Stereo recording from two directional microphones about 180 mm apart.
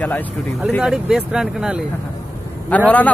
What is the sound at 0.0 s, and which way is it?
Speech, 5° left (ahead or behind).